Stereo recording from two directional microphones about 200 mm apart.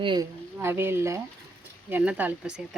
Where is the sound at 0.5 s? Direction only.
10° right (ahead or behind).